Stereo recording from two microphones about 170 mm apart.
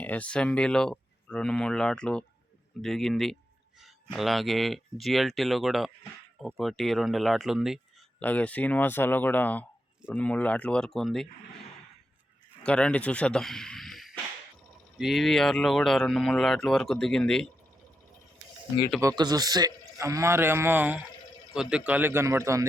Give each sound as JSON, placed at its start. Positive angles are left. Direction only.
{"t": 0.0, "sound": "speech", "side_deg": 10}
{"t": 8.2, "sound": "speech", "side_deg": 10}
{"t": 12.6, "sound": "speech", "side_deg": 5}
{"t": 18.9, "sound": "a man's voice", "side_deg": -20}